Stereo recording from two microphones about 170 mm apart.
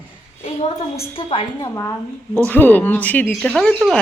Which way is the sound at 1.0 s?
30° left (ahead or behind).